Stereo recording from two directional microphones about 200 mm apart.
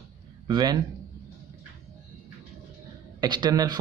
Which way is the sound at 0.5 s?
20° right (ahead or behind).